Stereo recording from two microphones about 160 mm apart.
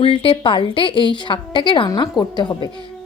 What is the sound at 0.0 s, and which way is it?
A woman's voice, 35° left (ahead or behind).